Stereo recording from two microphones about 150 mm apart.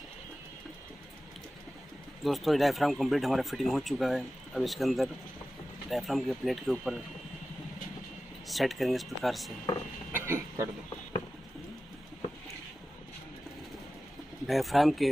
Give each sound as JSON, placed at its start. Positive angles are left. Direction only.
{"t": 2.2, "sound": "speech", "side_deg": 0}
{"t": 8.5, "sound": "speech", "side_deg": 0}
{"t": 10.1, "sound": "speech", "side_deg": -15}
{"t": 14.4, "sound": "speech", "side_deg": 0}